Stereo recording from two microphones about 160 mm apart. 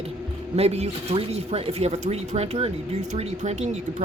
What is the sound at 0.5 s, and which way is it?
Speech, 40° right (ahead or behind).